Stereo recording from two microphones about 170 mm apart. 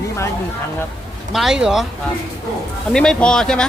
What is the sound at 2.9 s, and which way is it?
Speech, 5° left (ahead or behind).